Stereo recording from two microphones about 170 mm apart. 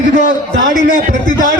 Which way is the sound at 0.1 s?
50° left (ahead or behind).